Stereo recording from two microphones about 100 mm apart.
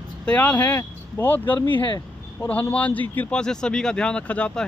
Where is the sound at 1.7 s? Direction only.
50° left (ahead or behind).